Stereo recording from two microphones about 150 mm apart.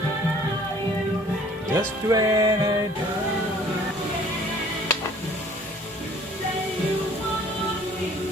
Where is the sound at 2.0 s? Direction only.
25° right (ahead or behind).